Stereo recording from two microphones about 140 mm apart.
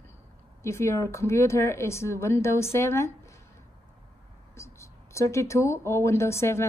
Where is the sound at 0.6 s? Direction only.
20° left (ahead or behind).